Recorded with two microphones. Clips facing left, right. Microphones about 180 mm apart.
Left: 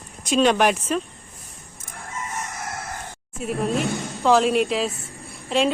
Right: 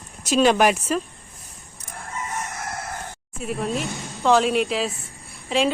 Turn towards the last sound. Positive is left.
turn(degrees=0)  # may be behind; listen again after turning